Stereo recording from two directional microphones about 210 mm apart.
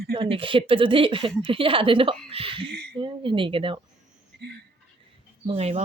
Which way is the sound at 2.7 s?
50° right (ahead or behind).